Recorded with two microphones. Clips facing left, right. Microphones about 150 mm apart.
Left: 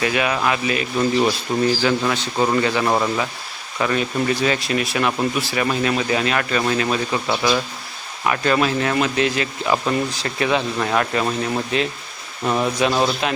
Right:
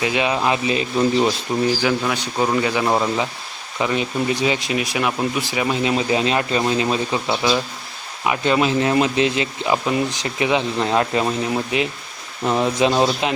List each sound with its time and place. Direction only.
0.0 s speech: 20° right (ahead or behind)
1.6 s speech: 10° right (ahead or behind)